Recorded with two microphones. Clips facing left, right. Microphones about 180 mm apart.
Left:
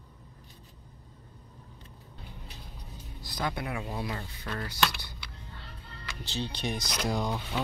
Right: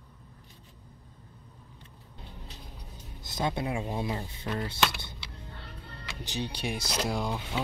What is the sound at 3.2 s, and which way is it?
Speech, 20° right (ahead or behind).